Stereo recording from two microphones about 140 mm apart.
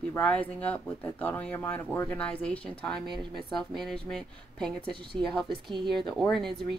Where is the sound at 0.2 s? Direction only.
10° left (ahead or behind).